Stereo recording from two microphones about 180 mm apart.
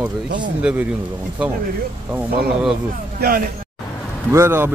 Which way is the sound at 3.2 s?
60° right (ahead or behind).